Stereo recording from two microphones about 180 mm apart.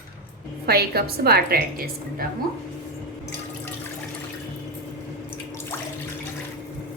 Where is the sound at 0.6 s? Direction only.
60° right (ahead or behind).